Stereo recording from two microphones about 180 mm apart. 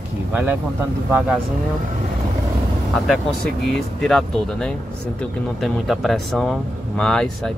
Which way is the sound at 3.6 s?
Centre (ahead or behind).